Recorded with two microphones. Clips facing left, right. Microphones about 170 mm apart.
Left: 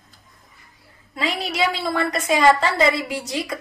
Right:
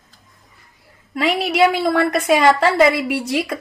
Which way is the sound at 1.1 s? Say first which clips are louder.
Right 7 dB; 60° right (ahead or behind).